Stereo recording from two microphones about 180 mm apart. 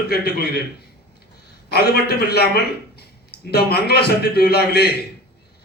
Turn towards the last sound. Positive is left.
turn(degrees=60)  # may be behind; listen again after turning